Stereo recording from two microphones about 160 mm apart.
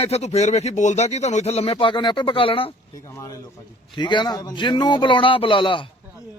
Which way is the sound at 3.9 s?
30° left (ahead or behind).